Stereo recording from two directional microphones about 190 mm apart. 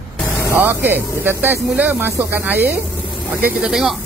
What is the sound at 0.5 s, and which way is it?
Speech, 10° right (ahead or behind).